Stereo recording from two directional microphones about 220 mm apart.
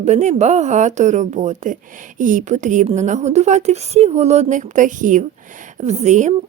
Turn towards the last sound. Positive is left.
turn(degrees=-30)  # may be behind; listen again after turning